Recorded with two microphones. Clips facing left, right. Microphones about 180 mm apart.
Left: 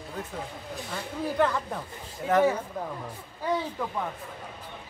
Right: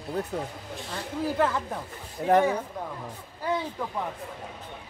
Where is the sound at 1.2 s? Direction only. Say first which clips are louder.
Even; 5° right (ahead or behind).